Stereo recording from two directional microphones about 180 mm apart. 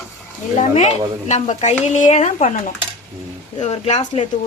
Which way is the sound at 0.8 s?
40° left (ahead or behind).